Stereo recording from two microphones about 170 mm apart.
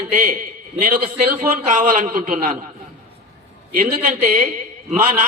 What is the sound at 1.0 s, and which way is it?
A man's voice, 45° right (ahead or behind).